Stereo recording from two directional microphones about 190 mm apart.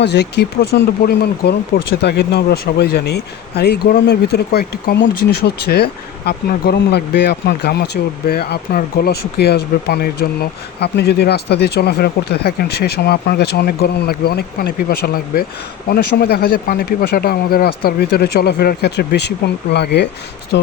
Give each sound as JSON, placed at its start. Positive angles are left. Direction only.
{"t": 0.0, "sound": "speech", "side_deg": 65}